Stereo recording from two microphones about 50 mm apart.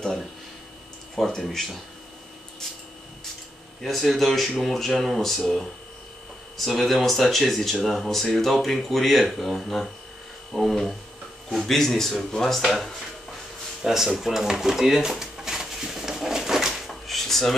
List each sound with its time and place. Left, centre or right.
1.1 s speech: centre
3.8 s speech: centre
6.5 s speech: centre
13.8 s drawer open or close: centre